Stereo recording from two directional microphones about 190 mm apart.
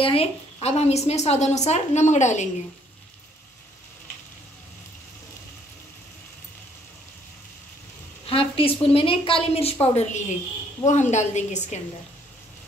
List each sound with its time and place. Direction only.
0.0 s a woman's voice: 30° left (ahead or behind)
8.3 s a woman's voice: 30° left (ahead or behind)